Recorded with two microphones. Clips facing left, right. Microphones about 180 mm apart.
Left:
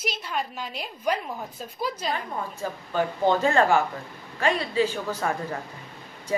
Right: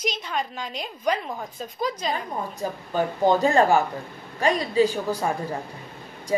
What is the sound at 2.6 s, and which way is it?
Speech, 15° right (ahead or behind).